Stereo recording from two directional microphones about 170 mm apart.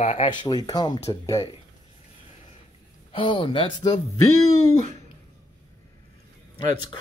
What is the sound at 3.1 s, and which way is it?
Speech, 30° left (ahead or behind).